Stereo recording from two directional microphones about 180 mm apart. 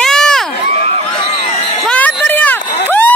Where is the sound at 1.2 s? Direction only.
35° left (ahead or behind).